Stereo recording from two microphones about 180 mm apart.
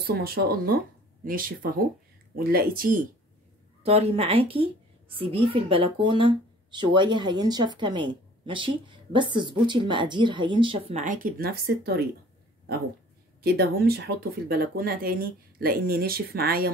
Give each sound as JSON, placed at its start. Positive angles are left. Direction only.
{"t": 0.0, "sound": "speech", "side_deg": -55}
{"t": 3.8, "sound": "speech", "side_deg": -35}
{"t": 13.4, "sound": "speech", "side_deg": -60}